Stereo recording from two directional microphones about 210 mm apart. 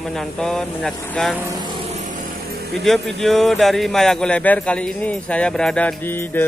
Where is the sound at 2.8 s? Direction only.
Centre (ahead or behind).